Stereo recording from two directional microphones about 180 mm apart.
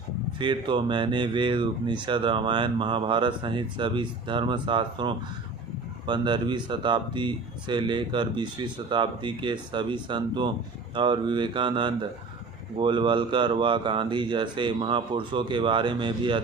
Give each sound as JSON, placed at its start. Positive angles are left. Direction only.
{"t": 0.3, "sound": "speech", "side_deg": -25}